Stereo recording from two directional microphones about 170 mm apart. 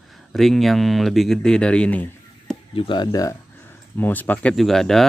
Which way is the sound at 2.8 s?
30° left (ahead or behind).